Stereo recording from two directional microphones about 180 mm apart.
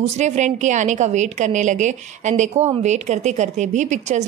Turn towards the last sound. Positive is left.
turn(degrees=-40)  # may be behind; listen again after turning